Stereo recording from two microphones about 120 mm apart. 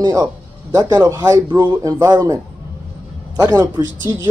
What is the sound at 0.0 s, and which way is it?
Speech, 35° right (ahead or behind).